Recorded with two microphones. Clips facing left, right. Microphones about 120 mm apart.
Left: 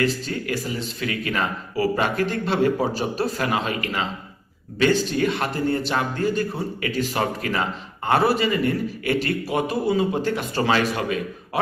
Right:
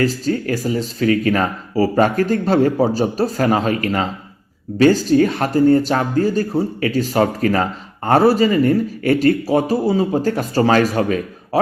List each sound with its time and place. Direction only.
0.0 s speech: 40° right (ahead or behind)